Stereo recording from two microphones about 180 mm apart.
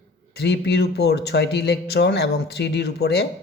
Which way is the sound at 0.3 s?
70° left (ahead or behind).